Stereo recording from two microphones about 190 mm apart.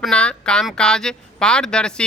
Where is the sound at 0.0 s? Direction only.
5° left (ahead or behind).